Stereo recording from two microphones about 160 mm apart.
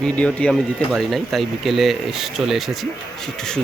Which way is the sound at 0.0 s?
5° left (ahead or behind).